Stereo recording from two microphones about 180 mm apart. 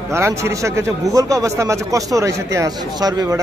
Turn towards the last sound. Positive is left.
turn(degrees=-20)  # may be behind; listen again after turning